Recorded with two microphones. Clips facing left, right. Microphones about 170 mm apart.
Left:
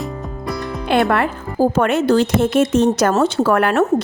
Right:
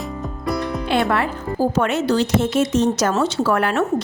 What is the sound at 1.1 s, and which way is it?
Speech, 55° left (ahead or behind).